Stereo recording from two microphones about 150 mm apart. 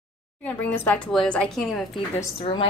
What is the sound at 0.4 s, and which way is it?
A woman's voice, 10° left (ahead or behind).